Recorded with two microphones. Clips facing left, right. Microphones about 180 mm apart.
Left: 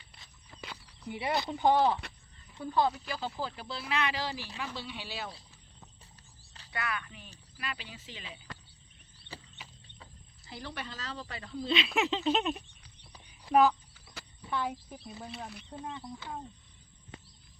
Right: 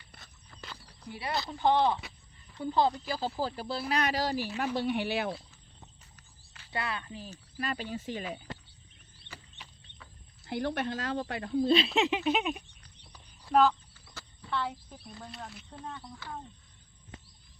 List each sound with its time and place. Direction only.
1.1 s speech: 20° left (ahead or behind)
1.7 s speech: 5° left (ahead or behind)
2.6 s speech: 25° right (ahead or behind); by 5.4 s 60° right (ahead or behind)
6.7 s speech: 30° right (ahead or behind); by 8.4 s 50° right (ahead or behind)
10.4 s speech: 60° right (ahead or behind); by 11.9 s 40° right (ahead or behind)
11.9 s speech: 15° right (ahead or behind)
12.8 s a sound: 10° left (ahead or behind)
15.1 s speech: 5° left (ahead or behind)
15.8 s speech: 20° left (ahead or behind)